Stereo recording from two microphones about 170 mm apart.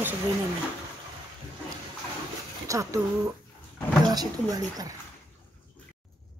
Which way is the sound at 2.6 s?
20° right (ahead or behind).